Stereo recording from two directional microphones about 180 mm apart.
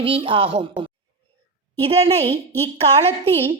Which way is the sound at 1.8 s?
35° right (ahead or behind).